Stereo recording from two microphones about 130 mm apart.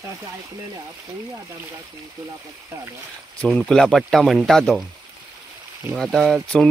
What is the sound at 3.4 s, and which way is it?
Speech, 5° left (ahead or behind).